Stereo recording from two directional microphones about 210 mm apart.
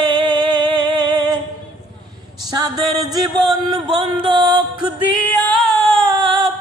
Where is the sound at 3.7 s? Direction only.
20° right (ahead or behind).